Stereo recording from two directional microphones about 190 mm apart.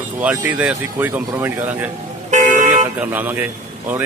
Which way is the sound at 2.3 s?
40° right (ahead or behind).